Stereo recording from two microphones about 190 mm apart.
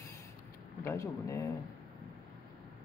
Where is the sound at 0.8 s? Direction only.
15° left (ahead or behind).